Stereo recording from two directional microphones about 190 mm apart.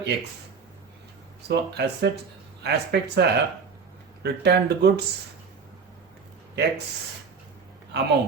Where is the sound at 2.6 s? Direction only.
60° right (ahead or behind).